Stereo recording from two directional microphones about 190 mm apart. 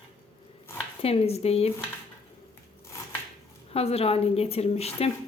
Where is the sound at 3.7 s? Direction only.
30° left (ahead or behind).